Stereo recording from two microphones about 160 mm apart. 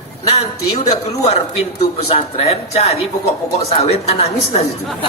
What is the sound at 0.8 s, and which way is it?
Speech, 40° left (ahead or behind).